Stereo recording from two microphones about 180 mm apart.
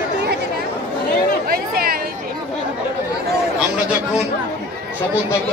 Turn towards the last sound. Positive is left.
turn(degrees=-5)  # may be behind; listen again after turning